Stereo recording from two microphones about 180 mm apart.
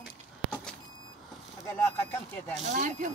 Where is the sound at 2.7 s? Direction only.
45° right (ahead or behind).